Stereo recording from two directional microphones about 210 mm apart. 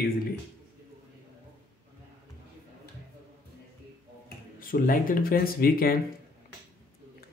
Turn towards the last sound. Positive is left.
turn(degrees=45)  # may be behind; listen again after turning